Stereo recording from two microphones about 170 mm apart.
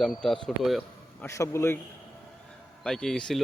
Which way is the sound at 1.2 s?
15° left (ahead or behind).